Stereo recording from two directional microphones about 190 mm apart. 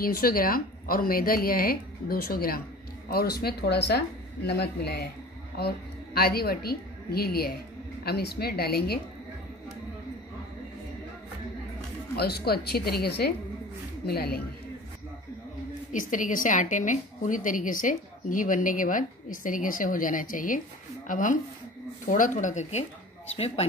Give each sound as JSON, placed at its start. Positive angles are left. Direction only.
{"t": 0.0, "sound": "a woman's voice", "side_deg": 50}
{"t": 12.2, "sound": "a woman's voice", "side_deg": 55}
{"t": 15.9, "sound": "a woman's voice", "side_deg": 45}